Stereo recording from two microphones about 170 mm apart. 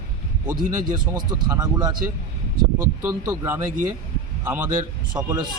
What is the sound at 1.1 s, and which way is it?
Speech, 25° right (ahead or behind).